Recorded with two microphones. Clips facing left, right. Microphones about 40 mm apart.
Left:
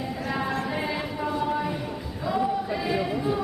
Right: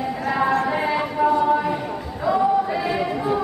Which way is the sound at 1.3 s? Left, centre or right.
Centre.